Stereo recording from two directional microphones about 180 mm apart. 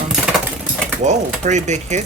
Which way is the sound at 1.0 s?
40° right (ahead or behind).